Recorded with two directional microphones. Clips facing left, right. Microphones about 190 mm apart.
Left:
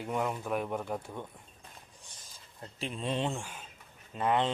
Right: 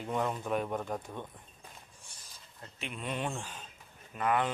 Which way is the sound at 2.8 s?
30° left (ahead or behind).